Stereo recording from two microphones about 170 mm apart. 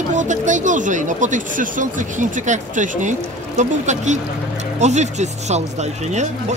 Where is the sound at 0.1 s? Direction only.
45° right (ahead or behind).